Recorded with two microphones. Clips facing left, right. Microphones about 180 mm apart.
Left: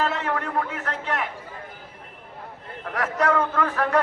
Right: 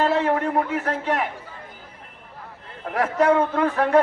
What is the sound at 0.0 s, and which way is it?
A man's voice, 35° right (ahead or behind).